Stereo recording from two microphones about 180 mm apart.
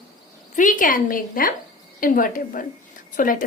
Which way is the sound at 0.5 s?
45° left (ahead or behind).